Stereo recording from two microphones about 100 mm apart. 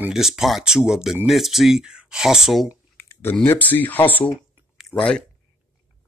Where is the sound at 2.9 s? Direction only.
25° left (ahead or behind).